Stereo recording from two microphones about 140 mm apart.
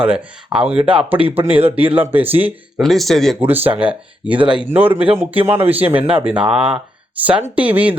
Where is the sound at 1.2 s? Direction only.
40° right (ahead or behind).